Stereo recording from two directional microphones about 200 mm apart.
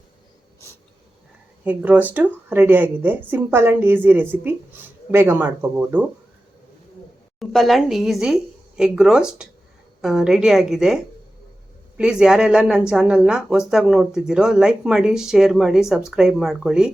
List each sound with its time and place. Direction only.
1.6 s speech: 10° right (ahead or behind)
7.3 s a woman's voice: centre (ahead or behind)